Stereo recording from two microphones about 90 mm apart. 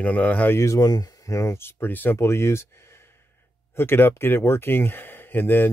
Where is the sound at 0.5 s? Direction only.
40° left (ahead or behind).